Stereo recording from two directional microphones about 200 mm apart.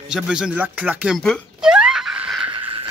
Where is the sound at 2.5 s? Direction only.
25° right (ahead or behind).